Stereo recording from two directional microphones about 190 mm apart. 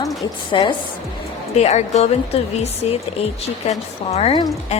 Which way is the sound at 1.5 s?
35° left (ahead or behind).